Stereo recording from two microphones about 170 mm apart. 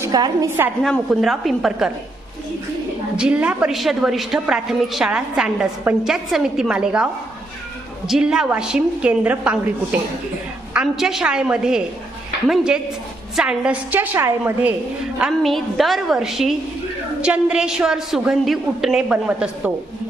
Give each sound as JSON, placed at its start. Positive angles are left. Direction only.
{"t": 0.0, "sound": "a woman's voice", "side_deg": -20}
{"t": 0.8, "sound": "a woman's voice", "side_deg": 0}
{"t": 3.2, "sound": "a woman's voice", "side_deg": -5}
{"t": 15.2, "sound": "a woman's voice", "side_deg": 0}